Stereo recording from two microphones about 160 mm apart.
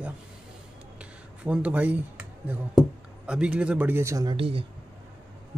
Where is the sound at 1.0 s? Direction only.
10° right (ahead or behind).